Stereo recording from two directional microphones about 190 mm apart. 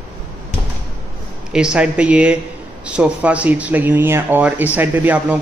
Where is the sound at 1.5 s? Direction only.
5° right (ahead or behind).